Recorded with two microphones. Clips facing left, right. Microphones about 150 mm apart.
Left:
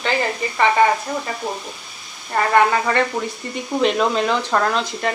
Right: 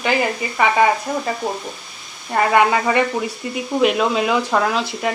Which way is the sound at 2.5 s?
15° right (ahead or behind).